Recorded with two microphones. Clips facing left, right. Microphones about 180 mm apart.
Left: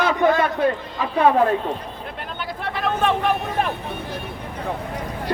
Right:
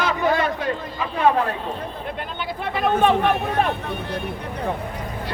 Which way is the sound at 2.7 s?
Centre (ahead or behind).